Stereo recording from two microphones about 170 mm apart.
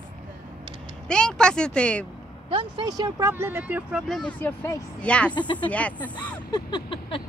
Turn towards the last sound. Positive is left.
turn(degrees=30)  # may be behind; listen again after turning